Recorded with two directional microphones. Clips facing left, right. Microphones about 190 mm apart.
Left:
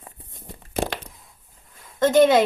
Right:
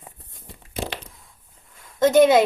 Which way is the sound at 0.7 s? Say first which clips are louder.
Left 4 dB; 50° left (ahead or behind).